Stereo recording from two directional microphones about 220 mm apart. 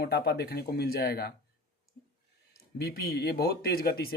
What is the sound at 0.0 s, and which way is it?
Speech, 45° left (ahead or behind).